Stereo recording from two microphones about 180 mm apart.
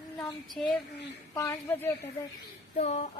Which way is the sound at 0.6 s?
5° left (ahead or behind).